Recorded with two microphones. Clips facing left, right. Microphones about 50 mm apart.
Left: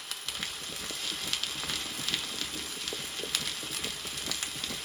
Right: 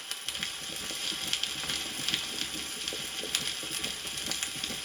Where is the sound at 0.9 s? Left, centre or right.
Right.